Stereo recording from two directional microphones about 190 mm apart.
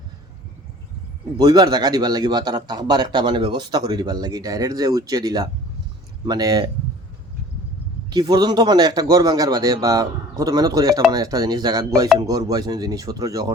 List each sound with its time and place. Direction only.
1.4 s a man's voice: 20° right (ahead or behind)
8.1 s a man's voice: 20° right (ahead or behind)